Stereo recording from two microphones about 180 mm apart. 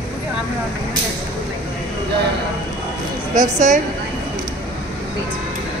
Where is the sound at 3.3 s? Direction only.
40° right (ahead or behind).